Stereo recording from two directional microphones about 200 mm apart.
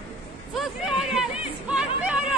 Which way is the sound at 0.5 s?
Centre (ahead or behind).